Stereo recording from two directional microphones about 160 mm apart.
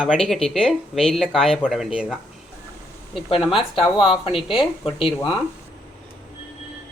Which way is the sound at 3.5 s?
35° left (ahead or behind).